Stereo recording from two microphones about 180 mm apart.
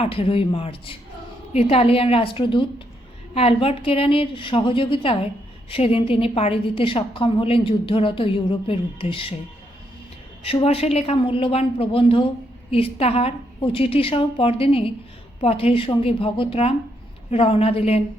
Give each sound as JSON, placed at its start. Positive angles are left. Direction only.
{"t": 0.0, "sound": "a woman's voice", "side_deg": 30}
{"t": 10.4, "sound": "a woman's voice", "side_deg": 30}